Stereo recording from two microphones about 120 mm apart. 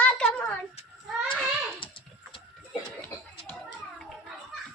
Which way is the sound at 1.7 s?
45° left (ahead or behind).